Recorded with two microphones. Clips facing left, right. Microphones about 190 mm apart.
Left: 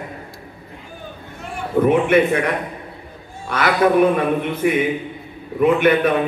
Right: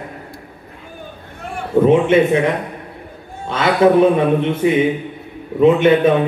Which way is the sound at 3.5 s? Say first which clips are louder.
Right 4 dB; 25° right (ahead or behind).